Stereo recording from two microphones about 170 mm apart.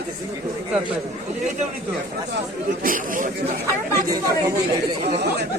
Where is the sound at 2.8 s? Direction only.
50° right (ahead or behind).